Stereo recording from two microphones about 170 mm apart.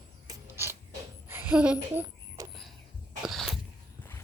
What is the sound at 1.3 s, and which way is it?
Speech, 10° right (ahead or behind).